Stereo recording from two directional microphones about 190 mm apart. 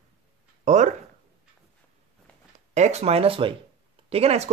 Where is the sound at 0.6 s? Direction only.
40° right (ahead or behind).